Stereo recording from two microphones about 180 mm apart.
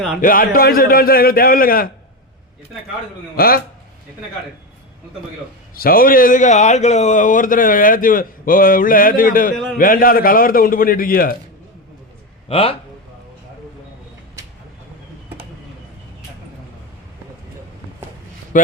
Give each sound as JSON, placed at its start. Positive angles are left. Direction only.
{"t": 0.2, "sound": "speech", "side_deg": 50}
{"t": 3.3, "sound": "speech", "side_deg": 55}
{"t": 5.7, "sound": "speech", "side_deg": 55}
{"t": 12.5, "sound": "speech", "side_deg": 30}
{"t": 18.5, "sound": "speech", "side_deg": 45}